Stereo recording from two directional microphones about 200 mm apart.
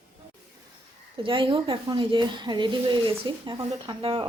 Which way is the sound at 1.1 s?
25° right (ahead or behind).